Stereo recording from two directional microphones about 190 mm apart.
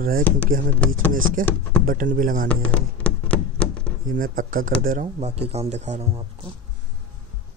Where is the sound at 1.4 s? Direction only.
45° right (ahead or behind).